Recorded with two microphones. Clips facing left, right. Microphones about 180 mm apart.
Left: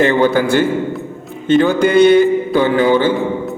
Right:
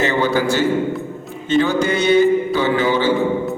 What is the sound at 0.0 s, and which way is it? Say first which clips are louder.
A man's voice: left 5 dB; 55° left (ahead or behind).